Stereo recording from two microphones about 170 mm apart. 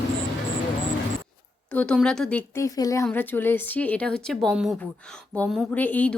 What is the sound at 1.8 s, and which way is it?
Speech, 5° left (ahead or behind).